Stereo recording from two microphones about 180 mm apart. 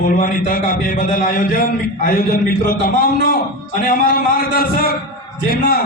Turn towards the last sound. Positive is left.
turn(degrees=55)  # may be behind; listen again after turning